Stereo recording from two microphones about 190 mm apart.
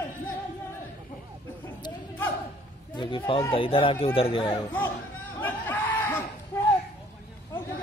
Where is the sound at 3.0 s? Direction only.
25° left (ahead or behind).